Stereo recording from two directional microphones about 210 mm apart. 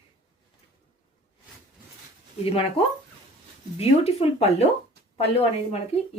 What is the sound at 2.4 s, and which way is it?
Speech, 25° left (ahead or behind).